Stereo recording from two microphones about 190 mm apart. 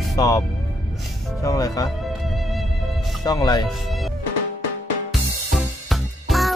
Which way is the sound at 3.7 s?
Centre (ahead or behind).